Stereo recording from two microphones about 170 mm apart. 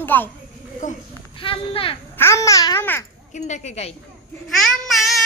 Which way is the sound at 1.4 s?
30° left (ahead or behind).